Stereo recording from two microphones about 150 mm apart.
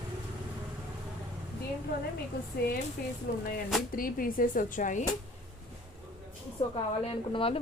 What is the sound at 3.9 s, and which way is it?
Speech, 70° left (ahead or behind).